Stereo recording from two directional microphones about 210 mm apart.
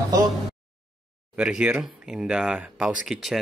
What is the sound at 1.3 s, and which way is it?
Speech, 5° right (ahead or behind).